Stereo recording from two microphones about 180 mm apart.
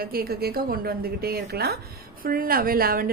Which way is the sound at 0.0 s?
55° right (ahead or behind).